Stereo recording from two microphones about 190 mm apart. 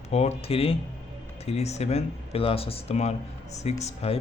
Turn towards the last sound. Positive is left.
turn(degrees=30)  # may be behind; listen again after turning